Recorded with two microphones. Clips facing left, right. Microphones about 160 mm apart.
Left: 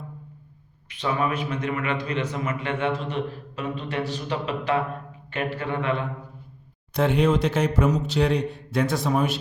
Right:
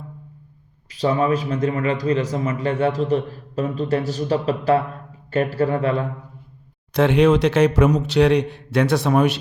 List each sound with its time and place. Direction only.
0.9 s a man's voice: 35° right (ahead or behind)
6.9 s a man's voice: 85° right